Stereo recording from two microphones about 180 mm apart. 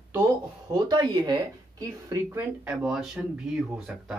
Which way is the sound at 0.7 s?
25° right (ahead or behind).